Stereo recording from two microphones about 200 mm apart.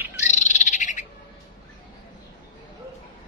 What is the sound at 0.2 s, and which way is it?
Bird, 35° left (ahead or behind).